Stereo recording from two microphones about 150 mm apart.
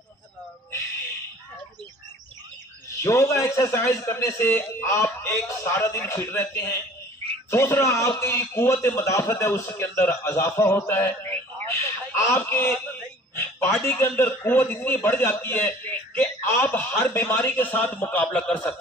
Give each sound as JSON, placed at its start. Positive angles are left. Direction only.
{"t": 3.0, "sound": "a man's voice", "side_deg": 20}
{"t": 10.9, "sound": "a sound", "side_deg": 15}
{"t": 13.4, "sound": "a man's voice", "side_deg": 15}